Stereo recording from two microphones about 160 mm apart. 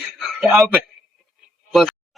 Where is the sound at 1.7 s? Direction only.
Centre (ahead or behind).